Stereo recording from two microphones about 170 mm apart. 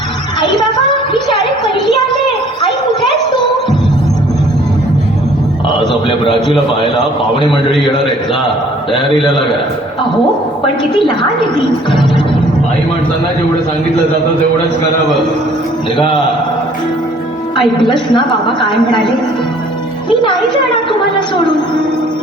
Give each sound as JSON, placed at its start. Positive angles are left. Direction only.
{"t": 1.1, "sound": "a sound", "side_deg": 25}
{"t": 5.9, "sound": "a woman's voice", "side_deg": 30}
{"t": 9.0, "sound": "a woman's voice", "side_deg": 25}
{"t": 10.9, "sound": "a woman's voice", "side_deg": 30}
{"t": 16.0, "sound": "a woman's voice", "side_deg": 25}
{"t": 17.6, "sound": "a woman's voice", "side_deg": 25}
{"t": 20.1, "sound": "a child's voice", "side_deg": 30}